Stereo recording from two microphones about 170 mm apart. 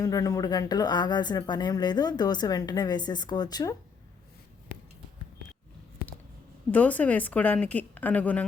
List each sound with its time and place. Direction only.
0.0 s speech: 20° left (ahead or behind)
6.7 s a woman's voice: 10° left (ahead or behind)